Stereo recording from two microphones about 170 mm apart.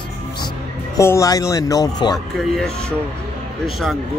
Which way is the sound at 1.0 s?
20° left (ahead or behind).